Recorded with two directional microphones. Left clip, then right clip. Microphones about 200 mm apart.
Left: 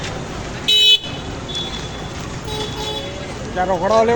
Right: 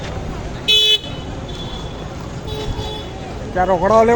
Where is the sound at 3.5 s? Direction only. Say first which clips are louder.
Right 3 dB; 35° right (ahead or behind).